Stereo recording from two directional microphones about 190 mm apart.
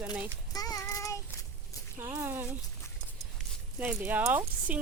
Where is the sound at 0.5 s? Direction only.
20° left (ahead or behind).